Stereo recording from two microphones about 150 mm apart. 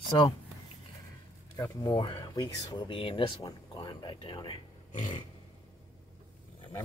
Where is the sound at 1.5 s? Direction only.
25° left (ahead or behind).